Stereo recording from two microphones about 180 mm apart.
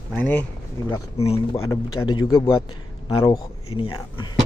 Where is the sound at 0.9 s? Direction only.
35° left (ahead or behind).